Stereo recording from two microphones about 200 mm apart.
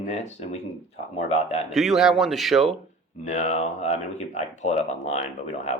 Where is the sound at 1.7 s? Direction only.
Centre (ahead or behind).